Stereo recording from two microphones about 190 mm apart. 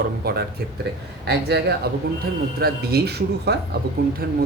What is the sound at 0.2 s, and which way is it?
Speech, 55° right (ahead or behind).